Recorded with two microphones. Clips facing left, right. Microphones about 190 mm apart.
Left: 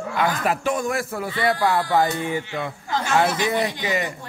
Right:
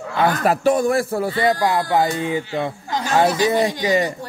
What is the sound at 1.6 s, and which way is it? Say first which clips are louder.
A man's voice: right 2 dB; 15° right (ahead or behind).